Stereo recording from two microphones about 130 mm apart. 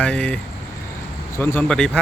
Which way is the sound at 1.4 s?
15° left (ahead or behind).